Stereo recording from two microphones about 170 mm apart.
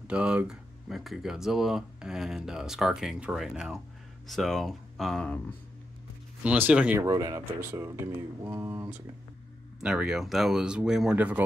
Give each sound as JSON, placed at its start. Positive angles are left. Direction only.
{"t": 0.0, "sound": "speech", "side_deg": -5}
{"t": 6.4, "sound": "speech", "side_deg": -10}